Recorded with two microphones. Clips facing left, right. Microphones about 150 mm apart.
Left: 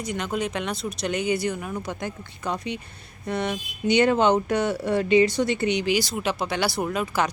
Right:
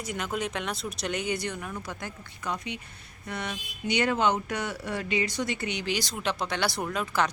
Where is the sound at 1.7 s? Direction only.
20° left (ahead or behind).